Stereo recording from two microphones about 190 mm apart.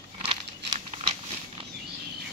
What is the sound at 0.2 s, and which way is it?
Crumpling, 30° right (ahead or behind).